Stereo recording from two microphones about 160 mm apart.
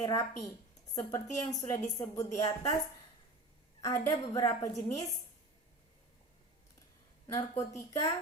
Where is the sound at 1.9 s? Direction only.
20° left (ahead or behind).